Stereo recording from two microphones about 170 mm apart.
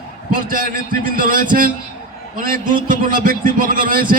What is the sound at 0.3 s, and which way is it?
A man's voice, 55° right (ahead or behind).